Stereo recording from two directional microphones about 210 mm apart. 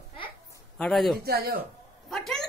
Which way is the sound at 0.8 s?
Centre (ahead or behind).